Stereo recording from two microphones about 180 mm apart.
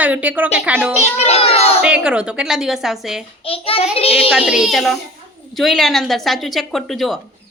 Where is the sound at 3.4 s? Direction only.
30° left (ahead or behind).